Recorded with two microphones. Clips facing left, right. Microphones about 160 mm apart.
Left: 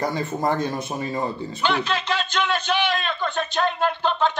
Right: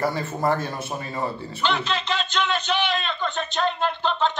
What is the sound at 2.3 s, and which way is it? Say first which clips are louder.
Speech: left 1 dB; 45° left (ahead or behind).